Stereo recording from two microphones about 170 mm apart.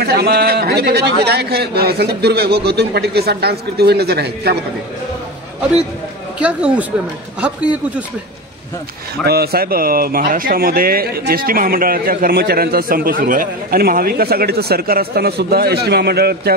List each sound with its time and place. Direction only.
0.0 s a man's voice: 70° right (ahead or behind)
7.3 s speech: 10° right (ahead or behind)
9.2 s speech: 70° right (ahead or behind)